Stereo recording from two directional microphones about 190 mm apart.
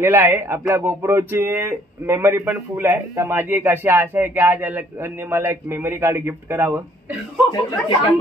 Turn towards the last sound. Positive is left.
turn(degrees=25)  # may be behind; listen again after turning